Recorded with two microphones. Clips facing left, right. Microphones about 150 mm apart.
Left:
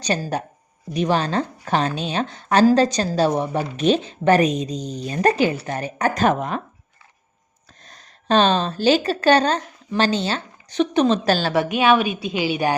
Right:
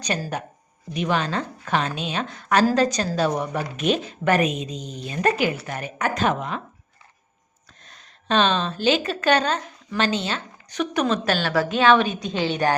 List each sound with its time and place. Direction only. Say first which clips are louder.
0.0 s a woman's voice: left 4 dB; 30° left (ahead or behind)
7.9 s a woman's voice: left 4 dB; 40° left (ahead or behind); by 12.7 s 10° left (ahead or behind)